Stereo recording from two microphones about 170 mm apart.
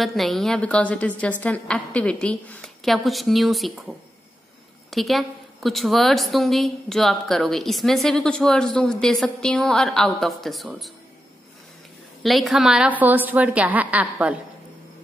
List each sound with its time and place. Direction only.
0.0 s a woman's voice: centre (ahead or behind)
4.9 s a woman's voice: centre (ahead or behind)
12.2 s a woman's voice: centre (ahead or behind)